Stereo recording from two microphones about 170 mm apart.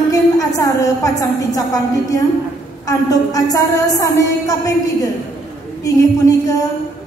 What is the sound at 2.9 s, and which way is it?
A woman's voice, 20° left (ahead or behind).